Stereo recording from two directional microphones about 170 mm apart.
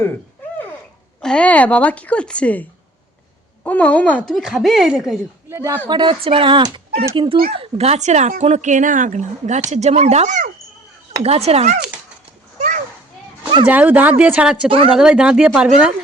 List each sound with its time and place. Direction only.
1.2 s a woman's voice: 5° left (ahead or behind)
5.5 s speech: 15° right (ahead or behind)
5.9 s speech: 30° right (ahead or behind)
12.5 s children playing: 45° right (ahead or behind)
13.7 s speech: 10° right (ahead or behind)